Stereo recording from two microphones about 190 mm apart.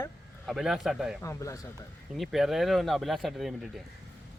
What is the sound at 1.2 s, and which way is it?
Speech, 15° left (ahead or behind).